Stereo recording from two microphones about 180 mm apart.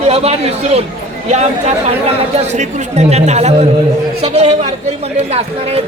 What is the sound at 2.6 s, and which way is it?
Speech, 40° right (ahead or behind).